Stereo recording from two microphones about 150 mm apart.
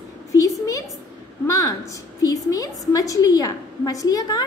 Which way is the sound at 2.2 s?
25° left (ahead or behind).